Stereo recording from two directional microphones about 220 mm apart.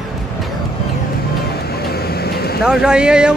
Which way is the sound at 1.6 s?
45° left (ahead or behind).